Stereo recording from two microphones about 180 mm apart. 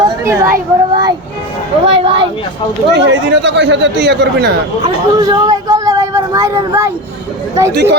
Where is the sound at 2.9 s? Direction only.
75° right (ahead or behind).